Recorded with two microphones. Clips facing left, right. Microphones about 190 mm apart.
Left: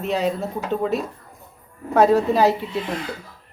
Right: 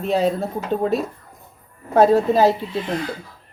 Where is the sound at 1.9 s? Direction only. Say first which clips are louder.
Right 2 dB; 25° right (ahead or behind).